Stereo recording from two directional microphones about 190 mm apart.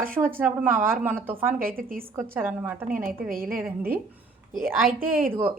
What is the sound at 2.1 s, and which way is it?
Speech, 10° right (ahead or behind).